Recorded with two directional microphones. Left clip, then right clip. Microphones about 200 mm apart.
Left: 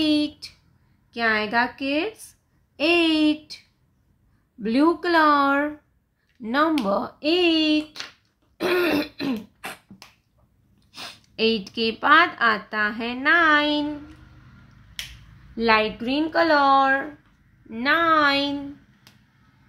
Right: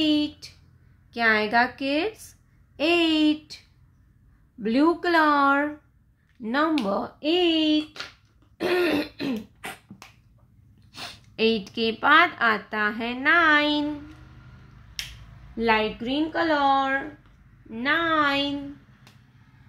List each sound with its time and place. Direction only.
0.0 s a woman's voice: 10° left (ahead or behind)
8.5 s throat clearing: 15° left (ahead or behind)
10.9 s speech: centre (ahead or behind)
15.5 s a woman's voice: 10° left (ahead or behind)